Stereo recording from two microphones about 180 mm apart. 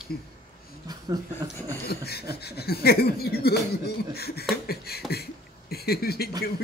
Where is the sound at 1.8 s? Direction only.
60° left (ahead or behind).